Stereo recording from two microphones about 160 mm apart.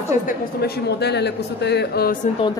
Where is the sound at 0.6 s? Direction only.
90° left.